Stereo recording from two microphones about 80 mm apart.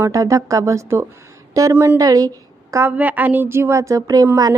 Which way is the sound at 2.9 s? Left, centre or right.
Right.